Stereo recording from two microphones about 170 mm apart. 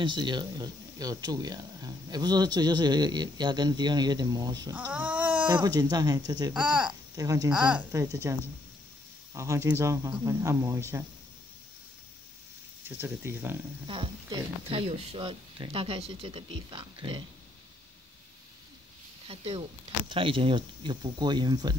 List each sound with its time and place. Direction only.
0.0 s speech: 25° right (ahead or behind)
4.9 s a sound: 5° right (ahead or behind)
5.5 s speech: 25° right (ahead or behind)
6.5 s speech: 5° right (ahead or behind)
6.9 s speech: 20° right (ahead or behind)
7.5 s speech: 5° right (ahead or behind)
7.9 s speech: 15° right (ahead or behind)
12.8 s speech: 15° right (ahead or behind)
13.8 s speech: 30° right (ahead or behind)
19.2 s speech: 35° right (ahead or behind)